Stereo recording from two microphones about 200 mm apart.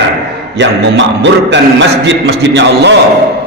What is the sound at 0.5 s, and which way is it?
A man's voice, 60° right (ahead or behind).